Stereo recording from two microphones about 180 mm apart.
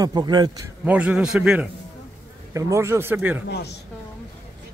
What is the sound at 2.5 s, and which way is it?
Speech, 15° right (ahead or behind).